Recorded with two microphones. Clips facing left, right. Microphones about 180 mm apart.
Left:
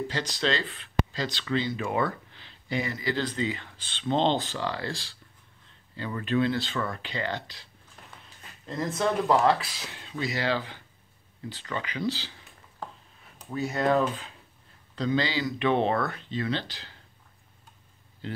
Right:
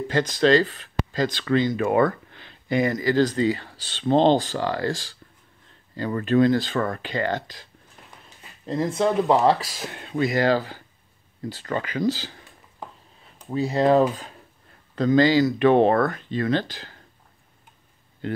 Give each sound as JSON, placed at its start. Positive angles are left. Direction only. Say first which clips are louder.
{"t": 0.1, "sound": "speech", "louder": "right 10 dB", "side_deg": -50}
{"t": 8.6, "sound": "speech", "louder": "right 5 dB", "side_deg": -30}
{"t": 9.6, "sound": "speech", "louder": "right 6 dB", "side_deg": -45}
{"t": 13.5, "sound": "speech", "louder": "right 6 dB", "side_deg": -30}
{"t": 15.0, "sound": "speech", "louder": "right 10 dB", "side_deg": -45}
{"t": 18.2, "sound": "speech", "louder": "right 8 dB", "side_deg": -55}